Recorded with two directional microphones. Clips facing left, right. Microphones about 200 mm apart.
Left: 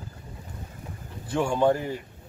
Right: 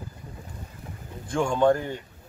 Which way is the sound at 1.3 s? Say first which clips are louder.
Right 1 dB; 5° left (ahead or behind).